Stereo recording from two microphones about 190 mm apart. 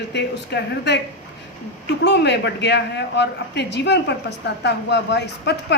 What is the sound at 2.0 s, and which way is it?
A woman's voice, 65° left (ahead or behind).